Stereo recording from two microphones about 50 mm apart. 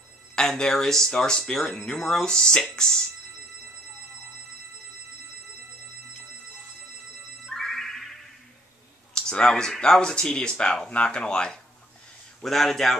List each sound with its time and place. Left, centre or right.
0.4 s speech: centre
7.5 s music: centre
9.1 s speech: centre